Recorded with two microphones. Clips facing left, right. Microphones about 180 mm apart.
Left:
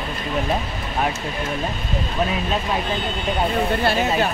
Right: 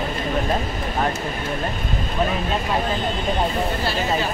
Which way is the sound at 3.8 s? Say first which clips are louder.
Left 3 dB; 60° left (ahead or behind).